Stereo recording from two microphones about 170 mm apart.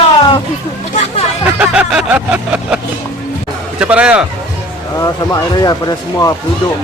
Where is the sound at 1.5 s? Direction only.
10° right (ahead or behind).